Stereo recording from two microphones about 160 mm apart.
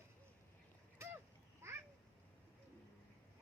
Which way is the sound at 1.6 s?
15° right (ahead or behind).